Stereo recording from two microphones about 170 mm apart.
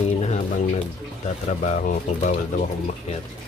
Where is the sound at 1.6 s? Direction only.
45° left (ahead or behind).